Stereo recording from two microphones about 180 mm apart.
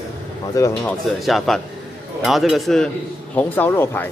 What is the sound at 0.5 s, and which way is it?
Speech, 15° left (ahead or behind).